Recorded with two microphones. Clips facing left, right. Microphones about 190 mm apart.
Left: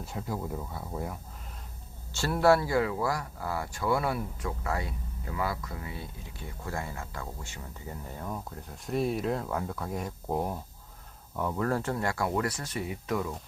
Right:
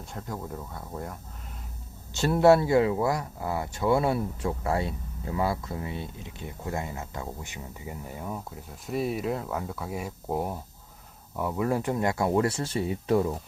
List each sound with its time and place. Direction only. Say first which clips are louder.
0.0 s speech: left 1 dB; 5° left (ahead or behind)
2.1 s speech: right 4 dB; 20° right (ahead or behind)